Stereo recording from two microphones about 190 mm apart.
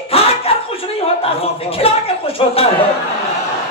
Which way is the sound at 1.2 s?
30° left (ahead or behind).